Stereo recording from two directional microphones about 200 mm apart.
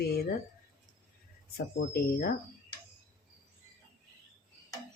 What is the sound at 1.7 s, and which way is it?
Speech, 50° left (ahead or behind).